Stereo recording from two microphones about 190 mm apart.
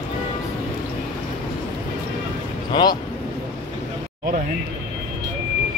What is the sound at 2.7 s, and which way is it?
Speech, 25° left (ahead or behind).